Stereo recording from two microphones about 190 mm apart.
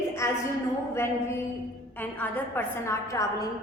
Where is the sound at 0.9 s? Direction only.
15° left (ahead or behind).